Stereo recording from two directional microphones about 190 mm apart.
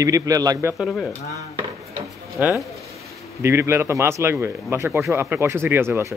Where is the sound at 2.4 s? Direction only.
10° right (ahead or behind).